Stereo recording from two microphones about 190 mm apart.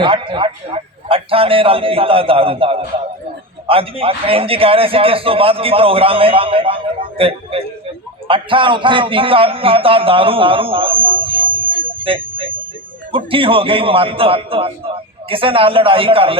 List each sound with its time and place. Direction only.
0.0 s a man's voice: 25° right (ahead or behind)